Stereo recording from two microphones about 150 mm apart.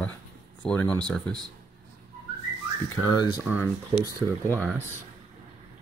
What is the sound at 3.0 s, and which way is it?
Speech, 25° left (ahead or behind).